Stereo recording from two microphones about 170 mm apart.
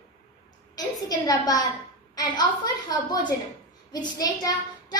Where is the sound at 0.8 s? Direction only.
20° left (ahead or behind).